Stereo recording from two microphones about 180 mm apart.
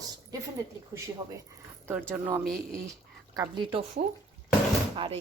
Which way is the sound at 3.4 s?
25° right (ahead or behind).